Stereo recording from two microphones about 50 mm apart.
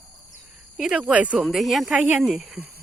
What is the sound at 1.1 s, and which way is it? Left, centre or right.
Speech, right.